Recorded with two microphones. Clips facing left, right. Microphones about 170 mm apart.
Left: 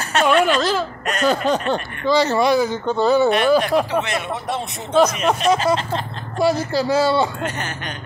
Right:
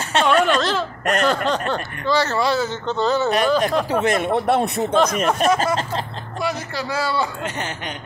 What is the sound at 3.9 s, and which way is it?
Speech, 45° right (ahead or behind).